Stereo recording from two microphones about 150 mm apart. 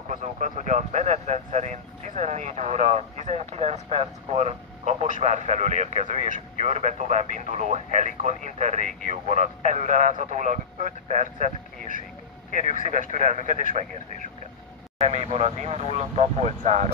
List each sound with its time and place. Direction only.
0.1 s speech: 55° right (ahead or behind)
15.0 s speech: 45° right (ahead or behind)